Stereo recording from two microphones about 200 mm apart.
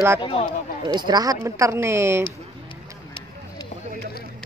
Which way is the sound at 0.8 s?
20° right (ahead or behind).